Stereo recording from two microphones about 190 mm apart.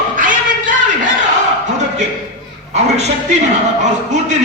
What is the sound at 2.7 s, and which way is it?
Speech, 35° right (ahead or behind).